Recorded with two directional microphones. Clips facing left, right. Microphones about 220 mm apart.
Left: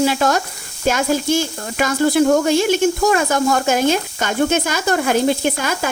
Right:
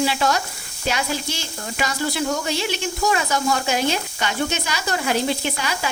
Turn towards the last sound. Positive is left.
turn(degrees=50)  # may be behind; listen again after turning